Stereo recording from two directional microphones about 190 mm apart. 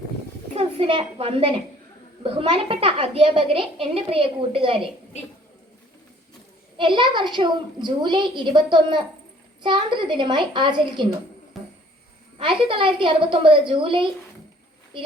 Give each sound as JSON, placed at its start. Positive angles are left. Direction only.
{"t": 0.5, "sound": "a child's voice", "side_deg": -30}
{"t": 6.7, "sound": "a child's voice", "side_deg": -25}
{"t": 11.6, "sound": "a sound", "side_deg": 0}
{"t": 12.4, "sound": "a child's voice", "side_deg": -25}